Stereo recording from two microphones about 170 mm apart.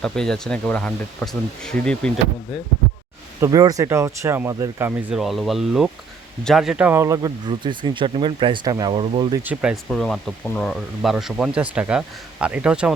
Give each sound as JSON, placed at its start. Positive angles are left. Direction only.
{"t": 0.0, "sound": "speech", "side_deg": 5}
{"t": 3.4, "sound": "speech", "side_deg": -20}
{"t": 9.4, "sound": "speech", "side_deg": -10}
{"t": 9.9, "sound": "speech", "side_deg": 5}